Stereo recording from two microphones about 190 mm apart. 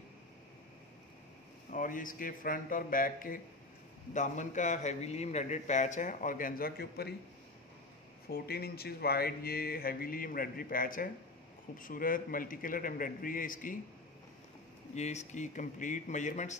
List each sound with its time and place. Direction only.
1.7 s a man's voice: 45° left (ahead or behind)
8.3 s speech: 55° left (ahead or behind)
15.0 s a man's voice: 35° left (ahead or behind)